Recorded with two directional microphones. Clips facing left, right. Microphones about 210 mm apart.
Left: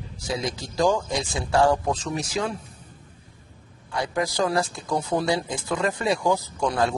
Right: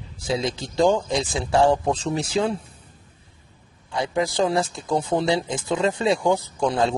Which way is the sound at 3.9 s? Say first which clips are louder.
Right 2 dB; 25° right (ahead or behind).